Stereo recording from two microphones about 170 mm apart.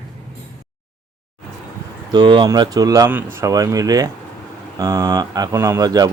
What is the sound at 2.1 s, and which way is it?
Speech, 25° right (ahead or behind).